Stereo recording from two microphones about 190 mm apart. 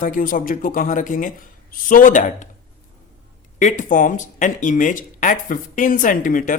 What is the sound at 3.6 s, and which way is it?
Speech, 45° left (ahead or behind).